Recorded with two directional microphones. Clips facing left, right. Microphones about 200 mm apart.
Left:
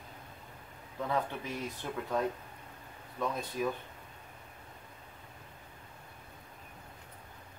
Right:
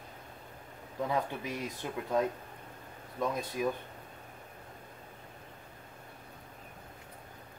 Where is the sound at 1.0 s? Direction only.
15° right (ahead or behind).